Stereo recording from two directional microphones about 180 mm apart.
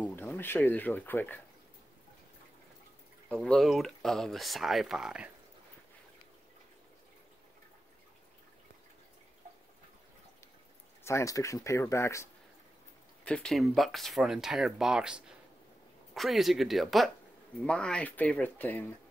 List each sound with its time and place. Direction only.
0.0 s speech: 10° left (ahead or behind)
3.3 s speech: 5° left (ahead or behind)
11.1 s speech: 15° left (ahead or behind)
13.2 s speech: 5° left (ahead or behind)